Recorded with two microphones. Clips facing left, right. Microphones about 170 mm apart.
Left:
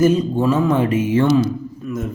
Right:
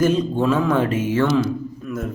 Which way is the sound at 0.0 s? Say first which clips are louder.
Left 3 dB; 10° left (ahead or behind).